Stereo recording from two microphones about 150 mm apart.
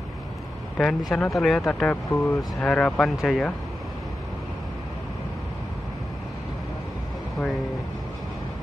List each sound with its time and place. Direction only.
0.7 s speech: centre (ahead or behind)
2.0 s speech: 20° left (ahead or behind)
2.6 s speech: 5° left (ahead or behind)